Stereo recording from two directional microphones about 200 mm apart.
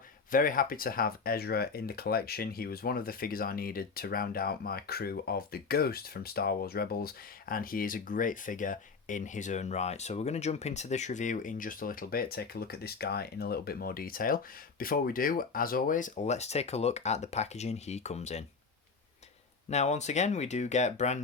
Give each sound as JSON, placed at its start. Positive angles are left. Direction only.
{"t": 0.3, "sound": "speech", "side_deg": 45}
{"t": 19.7, "sound": "speech", "side_deg": 35}